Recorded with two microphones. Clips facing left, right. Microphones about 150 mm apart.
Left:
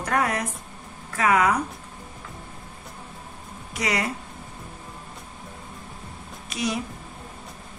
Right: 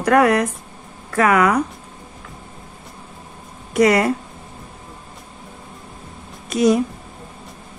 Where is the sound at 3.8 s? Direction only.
55° right (ahead or behind).